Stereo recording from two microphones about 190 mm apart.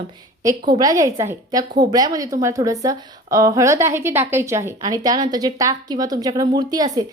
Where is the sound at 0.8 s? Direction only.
20° right (ahead or behind).